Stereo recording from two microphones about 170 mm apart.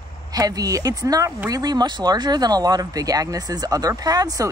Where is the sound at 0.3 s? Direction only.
20° right (ahead or behind).